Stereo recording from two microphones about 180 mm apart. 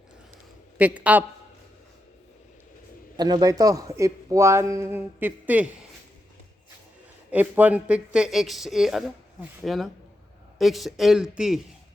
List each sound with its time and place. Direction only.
0.8 s speech: 10° right (ahead or behind)
3.2 s speech: 20° right (ahead or behind)
7.3 s speech: 10° right (ahead or behind)